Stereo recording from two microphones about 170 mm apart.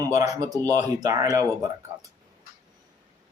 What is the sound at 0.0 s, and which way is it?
Speech, 20° right (ahead or behind).